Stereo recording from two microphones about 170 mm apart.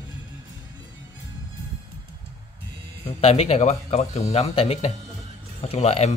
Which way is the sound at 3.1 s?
35° left (ahead or behind).